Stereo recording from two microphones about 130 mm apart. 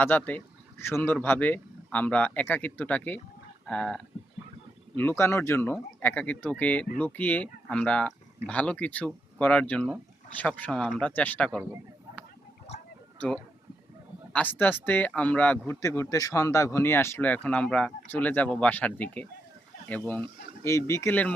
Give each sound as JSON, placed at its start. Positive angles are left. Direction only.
{"t": 0.0, "sound": "speech", "side_deg": 15}
{"t": 4.9, "sound": "speech", "side_deg": 20}
{"t": 13.1, "sound": "speech", "side_deg": 10}
{"t": 20.7, "sound": "speech", "side_deg": 20}